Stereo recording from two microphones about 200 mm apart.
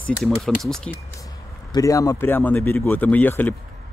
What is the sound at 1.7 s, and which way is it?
Speech, 15° left (ahead or behind).